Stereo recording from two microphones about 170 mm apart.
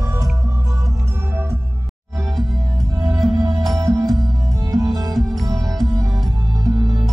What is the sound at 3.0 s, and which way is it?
Music, centre (ahead or behind).